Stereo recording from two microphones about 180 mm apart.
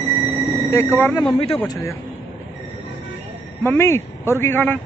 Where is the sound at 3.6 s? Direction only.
15° left (ahead or behind).